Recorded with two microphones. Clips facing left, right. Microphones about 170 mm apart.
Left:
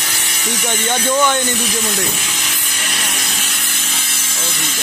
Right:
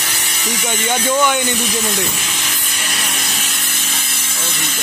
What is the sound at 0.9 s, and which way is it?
Speech, 10° right (ahead or behind).